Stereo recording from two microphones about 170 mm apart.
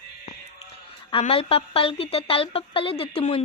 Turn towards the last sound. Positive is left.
turn(degrees=35)  # may be behind; listen again after turning